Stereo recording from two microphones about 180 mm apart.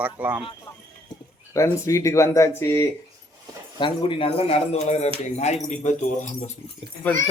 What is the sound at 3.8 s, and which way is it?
Speech, 30° left (ahead or behind).